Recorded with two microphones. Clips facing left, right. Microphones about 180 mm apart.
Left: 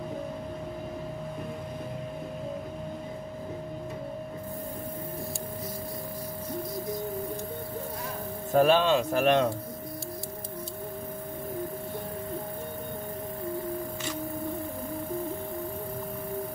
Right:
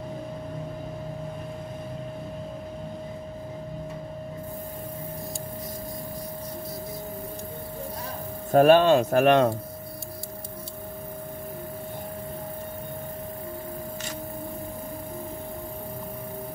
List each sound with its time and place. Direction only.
8.5 s speech: 55° right (ahead or behind)